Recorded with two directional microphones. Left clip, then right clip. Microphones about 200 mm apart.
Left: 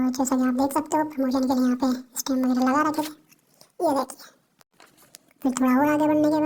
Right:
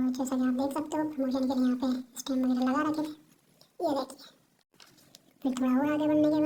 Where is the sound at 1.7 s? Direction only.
35° left (ahead or behind).